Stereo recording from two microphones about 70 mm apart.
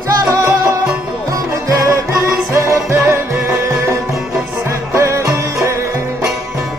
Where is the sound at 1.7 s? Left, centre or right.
Right.